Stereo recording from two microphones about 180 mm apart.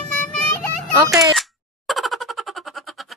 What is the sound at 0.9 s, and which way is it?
Speech, 15° right (ahead or behind).